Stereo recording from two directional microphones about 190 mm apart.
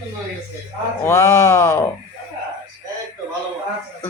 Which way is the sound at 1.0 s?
15° left (ahead or behind).